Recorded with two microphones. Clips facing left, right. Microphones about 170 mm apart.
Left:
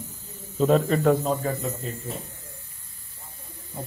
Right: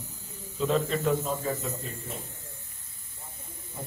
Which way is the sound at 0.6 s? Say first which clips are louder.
Left 6 dB; 50° left (ahead or behind).